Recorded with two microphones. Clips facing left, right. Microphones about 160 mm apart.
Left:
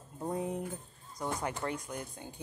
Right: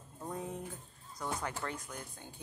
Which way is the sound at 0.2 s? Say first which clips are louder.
Left 6 dB; 20° left (ahead or behind).